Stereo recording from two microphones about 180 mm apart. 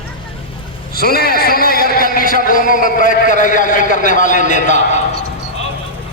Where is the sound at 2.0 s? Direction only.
50° left (ahead or behind).